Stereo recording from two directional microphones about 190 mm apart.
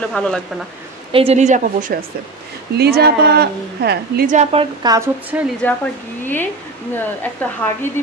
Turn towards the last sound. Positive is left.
turn(degrees=10)  # may be behind; listen again after turning